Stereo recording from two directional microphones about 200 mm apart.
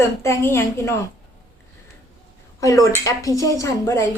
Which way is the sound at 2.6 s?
15° left (ahead or behind).